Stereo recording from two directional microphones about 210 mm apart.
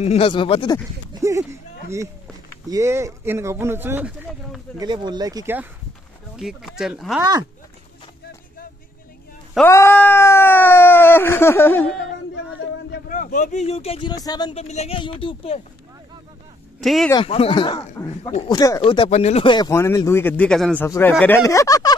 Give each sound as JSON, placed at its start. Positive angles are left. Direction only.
{"t": 0.0, "sound": "speech", "side_deg": 30}
{"t": 1.2, "sound": "a sound", "side_deg": -15}
{"t": 2.7, "sound": "speech", "side_deg": -15}
{"t": 4.7, "sound": "speech", "side_deg": -20}
{"t": 6.3, "sound": "speech", "side_deg": 0}
{"t": 9.7, "sound": "speech", "side_deg": 10}
{"t": 12.9, "sound": "speech", "side_deg": 40}
{"t": 16.8, "sound": "speech", "side_deg": 0}
{"t": 17.1, "sound": "speech", "side_deg": 25}